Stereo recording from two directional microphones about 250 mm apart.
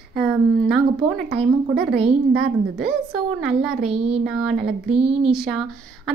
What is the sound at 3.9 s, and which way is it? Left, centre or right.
Speech, right.